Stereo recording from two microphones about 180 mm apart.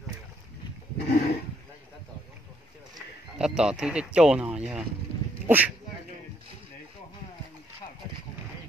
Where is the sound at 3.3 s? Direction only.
5° right (ahead or behind).